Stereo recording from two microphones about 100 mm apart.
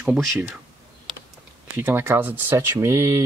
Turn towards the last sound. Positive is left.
turn(degrees=-25)  # may be behind; listen again after turning